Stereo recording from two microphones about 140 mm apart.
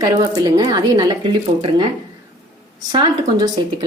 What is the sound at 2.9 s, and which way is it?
Speech, 30° right (ahead or behind).